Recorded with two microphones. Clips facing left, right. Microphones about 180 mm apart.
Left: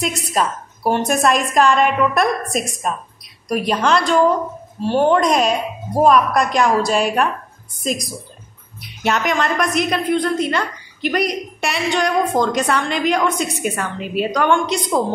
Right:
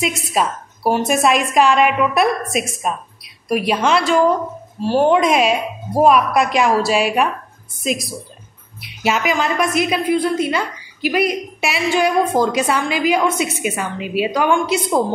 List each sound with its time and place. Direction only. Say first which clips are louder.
0.0 s a woman's voice: right 1 dB; centre (ahead or behind)